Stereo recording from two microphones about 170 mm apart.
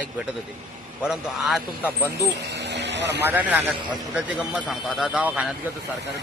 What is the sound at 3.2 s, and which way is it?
A man's voice, 10° right (ahead or behind).